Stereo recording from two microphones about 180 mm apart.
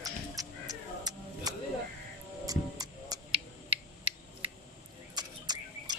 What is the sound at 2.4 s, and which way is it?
Music, 20° right (ahead or behind).